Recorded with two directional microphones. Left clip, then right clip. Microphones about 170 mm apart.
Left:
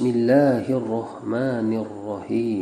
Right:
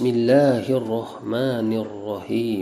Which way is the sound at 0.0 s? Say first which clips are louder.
Right 1 dB; 25° right (ahead or behind).